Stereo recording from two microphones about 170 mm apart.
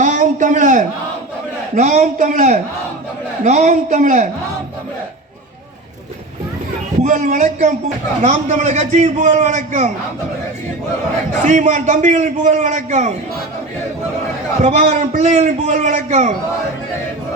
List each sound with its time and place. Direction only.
0.0 s a sound: 45° right (ahead or behind)
1.7 s a man's voice: 45° right (ahead or behind)
7.0 s a man's voice: 45° right (ahead or behind)
11.4 s a man's voice: 45° right (ahead or behind)
14.6 s a man's voice: 40° right (ahead or behind)